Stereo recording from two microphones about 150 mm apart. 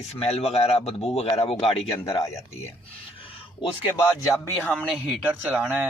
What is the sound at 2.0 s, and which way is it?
Speech, 20° left (ahead or behind).